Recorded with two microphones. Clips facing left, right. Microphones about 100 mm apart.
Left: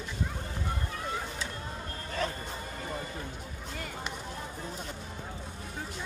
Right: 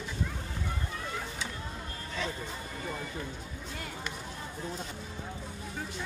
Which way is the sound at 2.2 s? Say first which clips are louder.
Left 3 dB; 45° left (ahead or behind).